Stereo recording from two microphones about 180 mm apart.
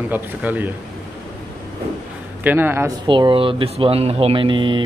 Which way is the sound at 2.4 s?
10° right (ahead or behind).